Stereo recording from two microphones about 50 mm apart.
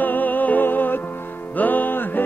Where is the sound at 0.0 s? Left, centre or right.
Left.